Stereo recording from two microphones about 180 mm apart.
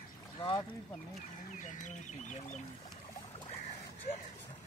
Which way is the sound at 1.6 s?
40° left (ahead or behind).